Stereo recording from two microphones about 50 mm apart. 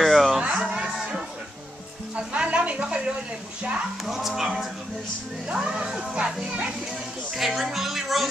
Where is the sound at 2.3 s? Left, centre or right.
Right.